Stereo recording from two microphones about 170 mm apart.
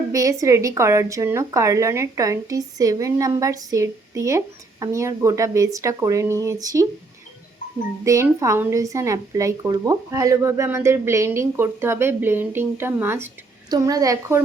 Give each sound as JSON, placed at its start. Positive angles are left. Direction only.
{"t": 0.1, "sound": "speech", "side_deg": -20}
{"t": 8.0, "sound": "speech", "side_deg": -20}